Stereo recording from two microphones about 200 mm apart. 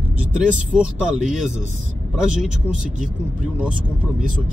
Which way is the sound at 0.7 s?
5° right (ahead or behind).